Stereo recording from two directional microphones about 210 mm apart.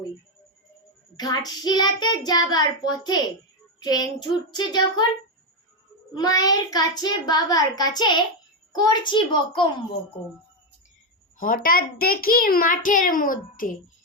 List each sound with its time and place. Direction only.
1.1 s child singing: 20° left (ahead or behind)
6.1 s child singing: 20° left (ahead or behind)
11.3 s a child's voice: 40° left (ahead or behind)